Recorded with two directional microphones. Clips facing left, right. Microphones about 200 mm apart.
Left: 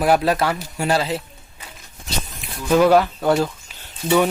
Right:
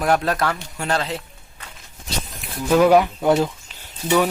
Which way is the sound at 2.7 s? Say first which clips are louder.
Even; 10° right (ahead or behind).